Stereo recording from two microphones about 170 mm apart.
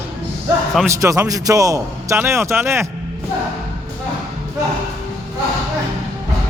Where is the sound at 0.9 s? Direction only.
20° right (ahead or behind).